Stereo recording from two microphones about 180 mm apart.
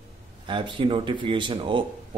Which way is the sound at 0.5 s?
25° right (ahead or behind).